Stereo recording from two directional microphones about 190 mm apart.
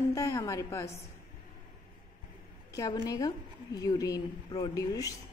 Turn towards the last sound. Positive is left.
turn(degrees=20)  # may be behind; listen again after turning